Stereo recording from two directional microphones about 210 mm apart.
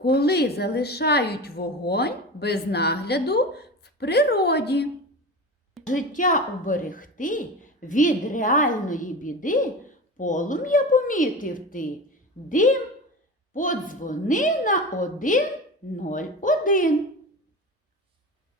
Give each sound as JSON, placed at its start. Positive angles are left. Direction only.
{"t": 0.0, "sound": "a woman's voice", "side_deg": 50}
{"t": 5.8, "sound": "a woman's voice", "side_deg": 40}